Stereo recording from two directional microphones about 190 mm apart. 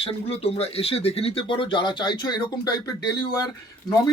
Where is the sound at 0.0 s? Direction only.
30° left (ahead or behind).